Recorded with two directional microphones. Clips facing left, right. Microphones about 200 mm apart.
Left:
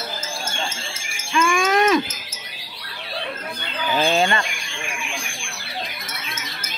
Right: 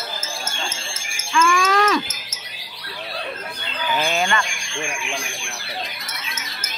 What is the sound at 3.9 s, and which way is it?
Chicken, 30° left (ahead or behind).